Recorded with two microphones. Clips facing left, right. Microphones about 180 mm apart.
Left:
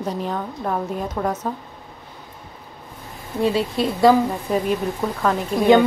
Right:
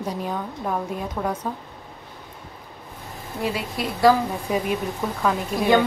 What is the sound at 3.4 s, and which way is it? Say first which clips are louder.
Speech: left 7 dB; 30° left (ahead or behind).